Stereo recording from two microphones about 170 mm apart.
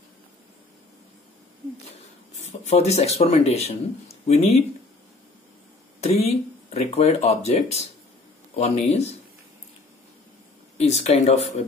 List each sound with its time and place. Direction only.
2.4 s speech: 40° left (ahead or behind)
5.9 s speech: 40° left (ahead or behind)
10.8 s speech: 40° left (ahead or behind)